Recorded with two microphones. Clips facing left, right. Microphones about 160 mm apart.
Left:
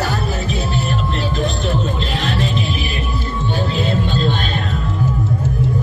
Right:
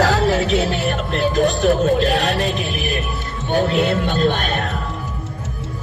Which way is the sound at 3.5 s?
65° right (ahead or behind).